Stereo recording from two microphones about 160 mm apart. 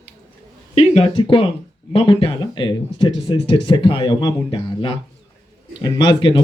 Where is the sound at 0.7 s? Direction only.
40° left (ahead or behind).